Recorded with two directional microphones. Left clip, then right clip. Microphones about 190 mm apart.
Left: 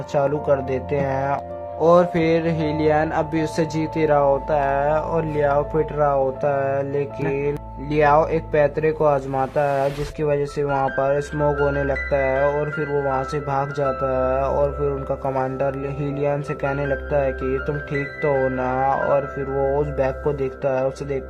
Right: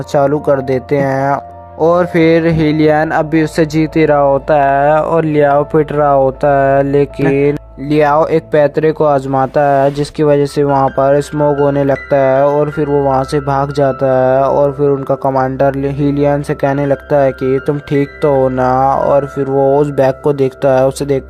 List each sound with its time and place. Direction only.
0.1 s speech: 35° right (ahead or behind)